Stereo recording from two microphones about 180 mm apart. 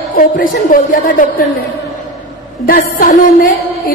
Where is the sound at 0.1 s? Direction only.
50° left (ahead or behind).